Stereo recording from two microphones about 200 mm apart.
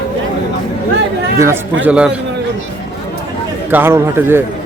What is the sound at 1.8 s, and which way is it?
Speech, 5° right (ahead or behind).